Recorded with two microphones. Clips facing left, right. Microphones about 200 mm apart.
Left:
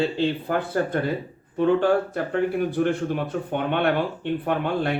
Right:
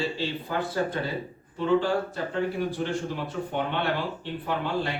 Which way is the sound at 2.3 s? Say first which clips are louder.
Left 6 dB; 55° left (ahead or behind).